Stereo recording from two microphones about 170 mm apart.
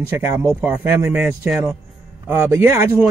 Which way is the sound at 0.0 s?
15° right (ahead or behind).